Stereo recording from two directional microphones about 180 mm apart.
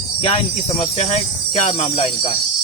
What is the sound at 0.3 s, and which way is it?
Speech, 35° left (ahead or behind).